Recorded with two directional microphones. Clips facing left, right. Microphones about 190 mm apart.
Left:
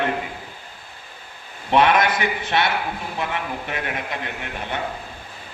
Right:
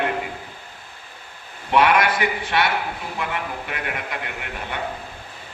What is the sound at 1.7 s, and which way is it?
A man's voice, 25° left (ahead or behind).